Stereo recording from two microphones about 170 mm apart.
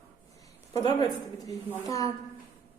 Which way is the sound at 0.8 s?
25° left (ahead or behind).